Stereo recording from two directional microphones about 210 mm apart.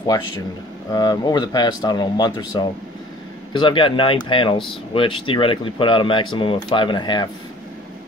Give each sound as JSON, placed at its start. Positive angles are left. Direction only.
{"t": 0.9, "sound": "speech", "side_deg": 20}
{"t": 3.5, "sound": "speech", "side_deg": 25}